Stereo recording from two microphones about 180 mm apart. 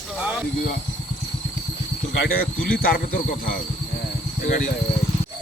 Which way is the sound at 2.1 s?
55° left (ahead or behind).